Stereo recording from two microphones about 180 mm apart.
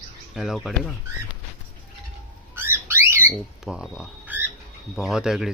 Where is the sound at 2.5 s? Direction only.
10° right (ahead or behind).